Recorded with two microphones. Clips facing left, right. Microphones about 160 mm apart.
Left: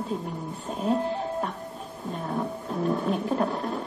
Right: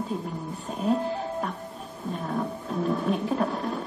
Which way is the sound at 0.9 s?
25° left (ahead or behind).